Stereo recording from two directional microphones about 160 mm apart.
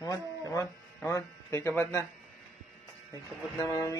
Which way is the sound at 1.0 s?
15° left (ahead or behind).